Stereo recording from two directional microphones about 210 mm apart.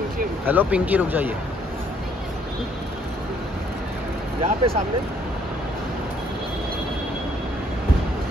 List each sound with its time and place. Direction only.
0.5 s speech: 5° right (ahead or behind)
4.4 s speech: 30° right (ahead or behind)